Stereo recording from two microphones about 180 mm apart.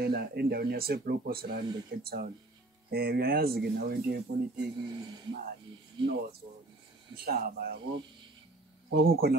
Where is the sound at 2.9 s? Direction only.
55° right (ahead or behind).